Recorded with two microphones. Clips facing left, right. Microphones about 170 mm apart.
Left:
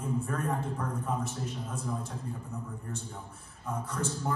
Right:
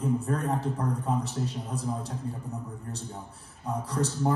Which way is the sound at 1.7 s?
35° right (ahead or behind).